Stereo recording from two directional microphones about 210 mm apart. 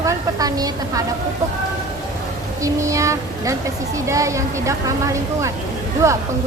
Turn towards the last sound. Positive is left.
turn(degrees=-15)  # may be behind; listen again after turning